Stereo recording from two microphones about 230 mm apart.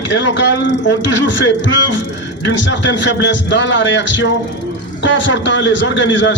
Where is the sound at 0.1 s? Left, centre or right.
Left.